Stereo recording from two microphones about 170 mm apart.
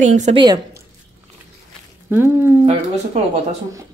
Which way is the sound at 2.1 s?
15° right (ahead or behind).